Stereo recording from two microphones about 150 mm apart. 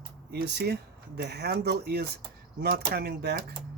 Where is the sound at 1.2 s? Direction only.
90° right.